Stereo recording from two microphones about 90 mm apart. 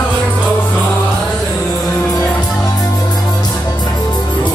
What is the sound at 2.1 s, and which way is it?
Music, 40° left (ahead or behind).